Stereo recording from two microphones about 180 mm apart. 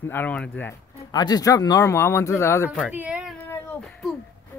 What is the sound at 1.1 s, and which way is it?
Speech, 20° left (ahead or behind).